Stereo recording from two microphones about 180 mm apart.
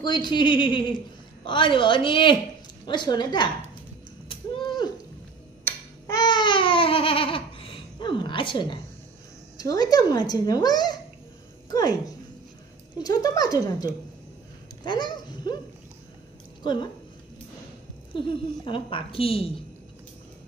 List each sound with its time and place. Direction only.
0.0 s a man's voice: 25° left (ahead or behind)
4.3 s a sound: 25° left (ahead or behind)
5.6 s babbling: 15° left (ahead or behind)
9.6 s a man's voice: 20° left (ahead or behind)
12.9 s a man's voice: 20° left (ahead or behind)
14.9 s speech: 25° left (ahead or behind)
18.1 s a man's voice: 30° left (ahead or behind)